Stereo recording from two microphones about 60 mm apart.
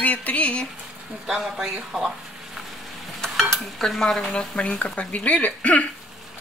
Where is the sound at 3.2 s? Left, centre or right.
Centre.